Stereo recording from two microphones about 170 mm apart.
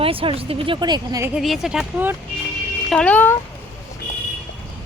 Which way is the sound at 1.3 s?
Centre (ahead or behind).